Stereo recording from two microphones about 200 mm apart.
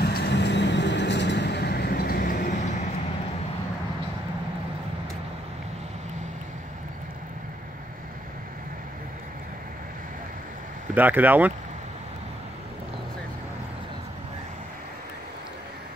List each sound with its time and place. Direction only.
0.0 s vehicle: 55° left (ahead or behind)
11.0 s speech: 10° right (ahead or behind)